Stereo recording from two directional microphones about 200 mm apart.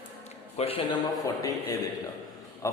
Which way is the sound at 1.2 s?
15° left (ahead or behind).